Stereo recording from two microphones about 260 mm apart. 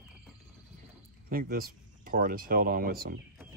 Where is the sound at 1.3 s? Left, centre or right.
Right.